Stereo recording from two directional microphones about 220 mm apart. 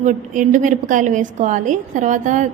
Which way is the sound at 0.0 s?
35° right (ahead or behind).